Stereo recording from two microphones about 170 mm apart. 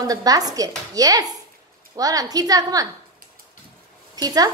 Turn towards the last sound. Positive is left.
turn(degrees=-20)  # may be behind; listen again after turning